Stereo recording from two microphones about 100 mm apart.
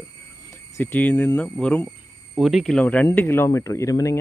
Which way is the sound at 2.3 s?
Centre (ahead or behind).